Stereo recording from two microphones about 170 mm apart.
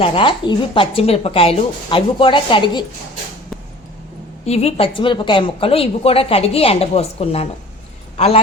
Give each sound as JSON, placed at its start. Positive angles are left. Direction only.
{"t": 0.0, "sound": "a woman's voice", "side_deg": 30}
{"t": 4.4, "sound": "a woman's voice", "side_deg": 40}